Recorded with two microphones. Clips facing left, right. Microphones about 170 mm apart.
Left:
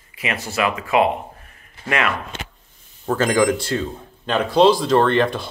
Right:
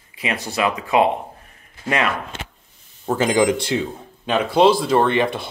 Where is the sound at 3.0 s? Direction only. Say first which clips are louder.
Even; 15° right (ahead or behind).